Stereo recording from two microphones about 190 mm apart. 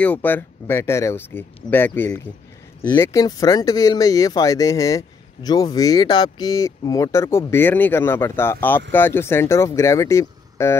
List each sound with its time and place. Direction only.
0.0 s speech: 10° left (ahead or behind)